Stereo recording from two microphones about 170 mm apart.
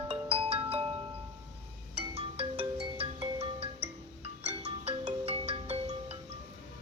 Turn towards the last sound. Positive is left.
turn(degrees=-35)  # may be behind; listen again after turning